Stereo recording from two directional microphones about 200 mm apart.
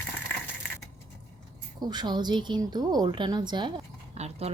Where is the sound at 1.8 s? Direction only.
20° right (ahead or behind).